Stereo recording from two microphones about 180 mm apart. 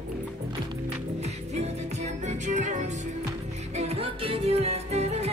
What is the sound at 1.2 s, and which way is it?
Music, 35° right (ahead or behind).